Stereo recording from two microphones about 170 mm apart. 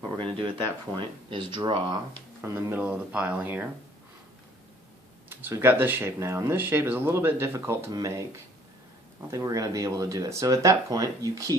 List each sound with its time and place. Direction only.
0.9 s speech: 30° right (ahead or behind)
2.4 s speech: 15° right (ahead or behind)
5.3 s speech: 10° right (ahead or behind)
9.3 s speech: 20° right (ahead or behind)